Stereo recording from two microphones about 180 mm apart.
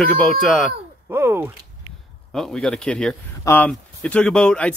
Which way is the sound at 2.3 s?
5° left (ahead or behind).